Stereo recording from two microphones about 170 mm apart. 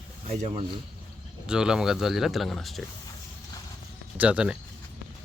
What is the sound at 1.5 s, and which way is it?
Speech, 5° right (ahead or behind).